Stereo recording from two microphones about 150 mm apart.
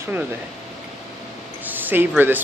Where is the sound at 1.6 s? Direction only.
10° right (ahead or behind).